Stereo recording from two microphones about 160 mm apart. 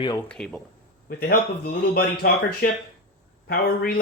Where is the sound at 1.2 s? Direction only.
70° left (ahead or behind).